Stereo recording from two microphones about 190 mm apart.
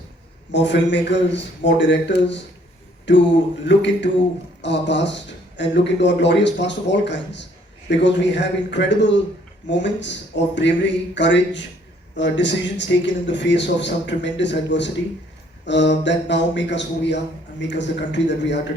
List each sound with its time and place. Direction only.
0.5 s a man's voice: 70° left (ahead or behind)